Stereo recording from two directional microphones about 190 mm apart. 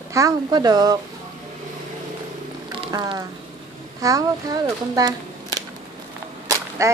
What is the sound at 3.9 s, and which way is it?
Speech, 20° right (ahead or behind).